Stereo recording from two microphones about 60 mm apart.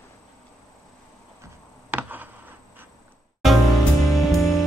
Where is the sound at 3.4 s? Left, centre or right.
Centre.